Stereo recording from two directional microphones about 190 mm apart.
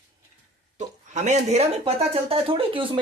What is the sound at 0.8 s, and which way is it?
Speech, 40° right (ahead or behind).